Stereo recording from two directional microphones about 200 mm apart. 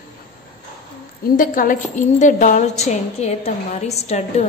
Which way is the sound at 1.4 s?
45° left (ahead or behind).